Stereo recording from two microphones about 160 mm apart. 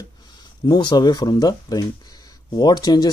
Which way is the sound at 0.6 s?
25° left (ahead or behind).